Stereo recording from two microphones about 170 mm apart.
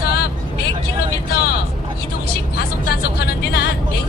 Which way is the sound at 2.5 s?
70° left (ahead or behind).